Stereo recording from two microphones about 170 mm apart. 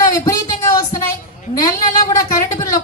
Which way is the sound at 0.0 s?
20° left (ahead or behind).